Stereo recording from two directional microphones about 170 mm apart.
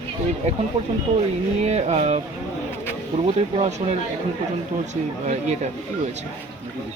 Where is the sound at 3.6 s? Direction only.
40° right (ahead or behind).